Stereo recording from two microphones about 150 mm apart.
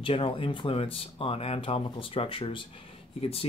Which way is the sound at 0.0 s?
35° left (ahead or behind).